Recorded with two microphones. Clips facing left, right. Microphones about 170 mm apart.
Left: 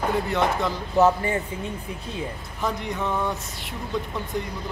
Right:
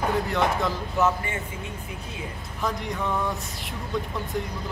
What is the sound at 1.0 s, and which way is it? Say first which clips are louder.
Speech: left 6 dB; 35° left (ahead or behind).